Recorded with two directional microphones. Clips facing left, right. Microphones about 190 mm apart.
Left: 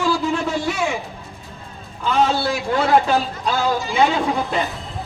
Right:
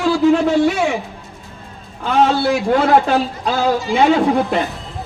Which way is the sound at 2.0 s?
65° right (ahead or behind).